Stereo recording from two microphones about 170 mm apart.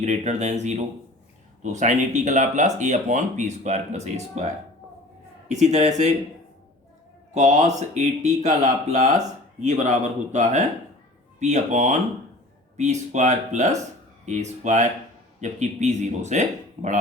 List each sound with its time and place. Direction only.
0.0 s speech: 45° right (ahead or behind)
5.5 s speech: 45° right (ahead or behind)
7.3 s speech: 45° right (ahead or behind)